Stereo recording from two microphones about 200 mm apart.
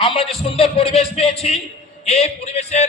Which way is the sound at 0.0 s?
25° left (ahead or behind).